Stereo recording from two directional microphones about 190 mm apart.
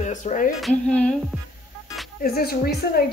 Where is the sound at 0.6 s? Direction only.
5° left (ahead or behind).